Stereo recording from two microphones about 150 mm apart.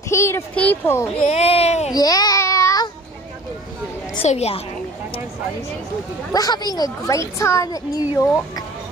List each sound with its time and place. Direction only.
0.1 s speech: 20° left (ahead or behind)
1.2 s speech: 45° left (ahead or behind)
2.0 s child singing: 25° left (ahead or behind)
4.2 s speech: 45° left (ahead or behind)
6.3 s a woman's voice: 25° left (ahead or behind)